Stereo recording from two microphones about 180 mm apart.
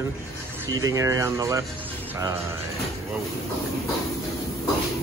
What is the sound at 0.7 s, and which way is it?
Speech, 20° right (ahead or behind).